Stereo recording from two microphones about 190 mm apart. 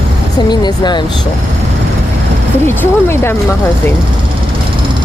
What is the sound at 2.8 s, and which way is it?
Speech, 10° left (ahead or behind).